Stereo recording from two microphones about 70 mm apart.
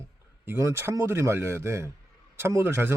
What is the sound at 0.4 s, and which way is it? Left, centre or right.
Speech, right.